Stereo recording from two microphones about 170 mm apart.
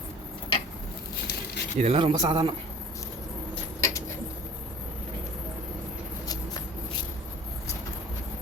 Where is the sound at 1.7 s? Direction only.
40° right (ahead or behind).